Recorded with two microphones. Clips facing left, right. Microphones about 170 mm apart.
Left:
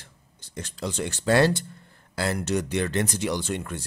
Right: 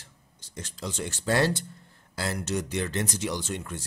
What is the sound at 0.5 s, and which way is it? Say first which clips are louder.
Speech: left 4 dB; 65° left (ahead or behind).